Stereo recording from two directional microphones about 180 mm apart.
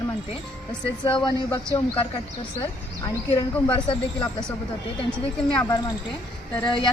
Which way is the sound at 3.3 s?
30° left (ahead or behind).